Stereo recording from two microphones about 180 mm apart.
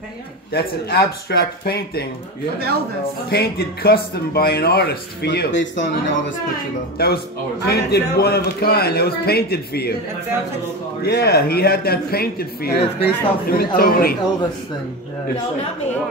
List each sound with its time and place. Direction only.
0.5 s a man's voice: 60° left (ahead or behind)
3.3 s a man's voice: 60° left (ahead or behind); by 6.3 s 90° left
7.0 s a man's voice: 60° left (ahead or behind)
11.1 s a man's voice: 60° left (ahead or behind)